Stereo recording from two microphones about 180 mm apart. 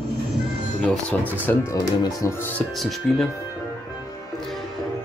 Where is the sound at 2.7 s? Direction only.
Centre (ahead or behind).